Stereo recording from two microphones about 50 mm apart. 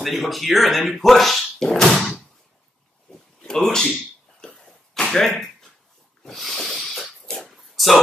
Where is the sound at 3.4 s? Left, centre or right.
Centre.